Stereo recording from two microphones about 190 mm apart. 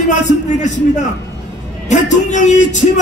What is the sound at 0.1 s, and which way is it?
Speech, 40° left (ahead or behind).